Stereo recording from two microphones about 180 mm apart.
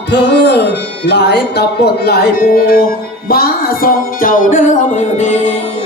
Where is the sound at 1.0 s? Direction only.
70° left (ahead or behind).